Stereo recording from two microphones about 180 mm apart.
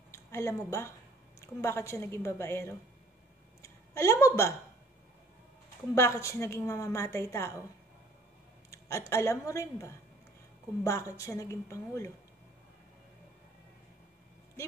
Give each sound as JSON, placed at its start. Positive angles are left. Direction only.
{"t": 0.1, "sound": "a woman's voice", "side_deg": 15}
{"t": 5.9, "sound": "a woman's voice", "side_deg": 15}
{"t": 8.6, "sound": "a sound", "side_deg": 15}
{"t": 9.1, "sound": "a woman's voice", "side_deg": 15}